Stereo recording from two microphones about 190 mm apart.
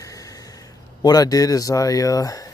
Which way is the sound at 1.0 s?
20° left (ahead or behind).